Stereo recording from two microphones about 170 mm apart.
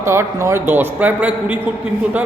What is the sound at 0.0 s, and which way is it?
A man's voice, 15° right (ahead or behind).